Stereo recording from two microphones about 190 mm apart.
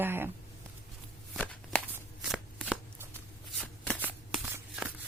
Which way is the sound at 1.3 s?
5° left (ahead or behind).